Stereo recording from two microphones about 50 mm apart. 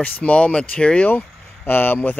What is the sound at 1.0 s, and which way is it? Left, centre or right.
Speech, left.